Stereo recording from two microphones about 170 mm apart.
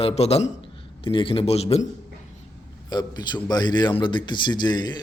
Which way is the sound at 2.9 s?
25° left (ahead or behind).